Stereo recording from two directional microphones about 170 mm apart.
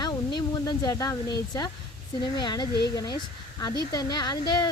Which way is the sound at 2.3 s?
25° left (ahead or behind).